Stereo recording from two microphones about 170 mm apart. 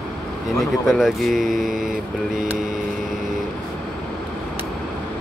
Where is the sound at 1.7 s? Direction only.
50° right (ahead or behind).